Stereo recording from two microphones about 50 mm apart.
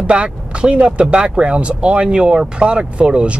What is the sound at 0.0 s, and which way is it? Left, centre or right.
Speech, right.